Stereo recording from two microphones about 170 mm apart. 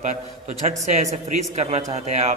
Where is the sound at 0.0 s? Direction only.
45° right (ahead or behind).